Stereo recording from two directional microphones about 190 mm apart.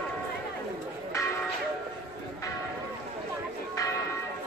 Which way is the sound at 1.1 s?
15° left (ahead or behind).